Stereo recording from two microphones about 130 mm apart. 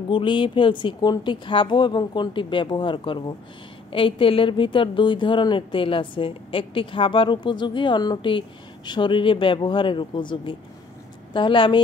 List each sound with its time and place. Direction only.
0.1 s a woman's voice: 40° left (ahead or behind)